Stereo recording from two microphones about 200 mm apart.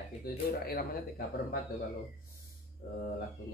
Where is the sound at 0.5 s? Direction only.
50° left (ahead or behind).